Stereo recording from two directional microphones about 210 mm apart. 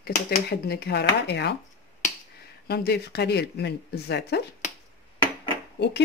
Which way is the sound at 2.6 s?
50° left (ahead or behind).